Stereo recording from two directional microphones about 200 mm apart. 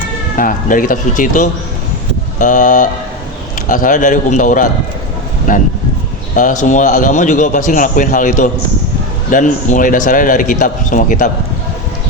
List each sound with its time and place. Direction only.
0.3 s a man's voice: 45° left (ahead or behind)